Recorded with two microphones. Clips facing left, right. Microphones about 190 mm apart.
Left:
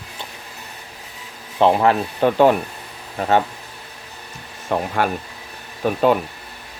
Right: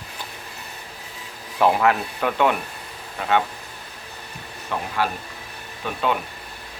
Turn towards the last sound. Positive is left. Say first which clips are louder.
# left 7 dB
turn(degrees=45)  # may be behind; listen again after turning